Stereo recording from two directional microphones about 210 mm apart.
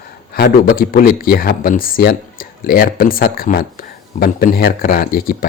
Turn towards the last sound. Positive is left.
turn(degrees=45)  # may be behind; listen again after turning